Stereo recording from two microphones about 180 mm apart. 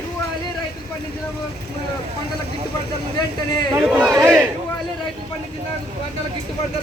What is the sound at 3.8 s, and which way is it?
Speech, 10° right (ahead or behind).